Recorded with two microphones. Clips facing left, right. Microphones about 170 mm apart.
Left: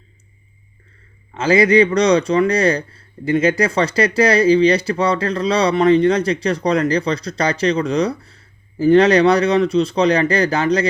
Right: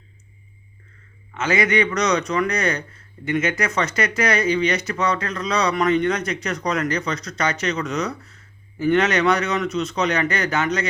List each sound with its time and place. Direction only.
1.3 s speech: 30° left (ahead or behind)